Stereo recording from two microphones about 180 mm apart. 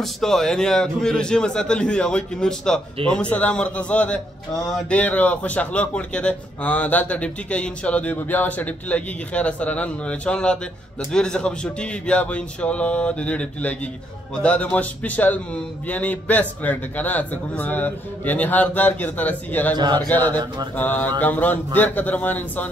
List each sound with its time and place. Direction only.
0.0 s a man's voice: centre (ahead or behind)
19.7 s speech: 20° right (ahead or behind)
20.1 s a man's voice: 10° left (ahead or behind)